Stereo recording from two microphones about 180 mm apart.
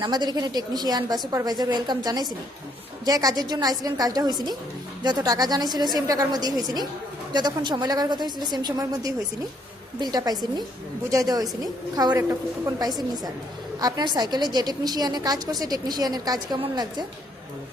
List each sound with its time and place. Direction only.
0.0 s a woman's voice: 25° right (ahead or behind)